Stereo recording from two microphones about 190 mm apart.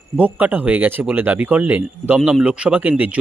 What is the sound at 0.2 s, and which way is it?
Speech, 10° right (ahead or behind).